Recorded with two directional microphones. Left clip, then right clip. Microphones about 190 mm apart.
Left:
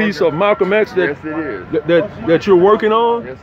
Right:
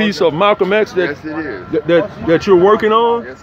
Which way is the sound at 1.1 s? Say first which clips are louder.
Left 1 dB; 35° left (ahead or behind).